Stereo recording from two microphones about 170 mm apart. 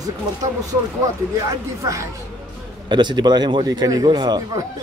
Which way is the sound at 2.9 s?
25° right (ahead or behind).